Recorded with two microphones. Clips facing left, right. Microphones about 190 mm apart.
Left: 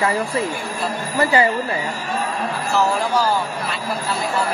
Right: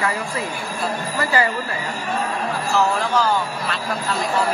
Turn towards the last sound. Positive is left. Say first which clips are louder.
# even
turn(degrees=10)  # may be behind; listen again after turning